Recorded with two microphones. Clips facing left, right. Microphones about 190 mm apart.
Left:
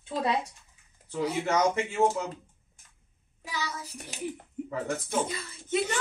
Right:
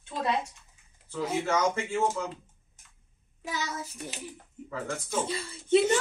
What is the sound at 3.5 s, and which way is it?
Child singing, 45° right (ahead or behind).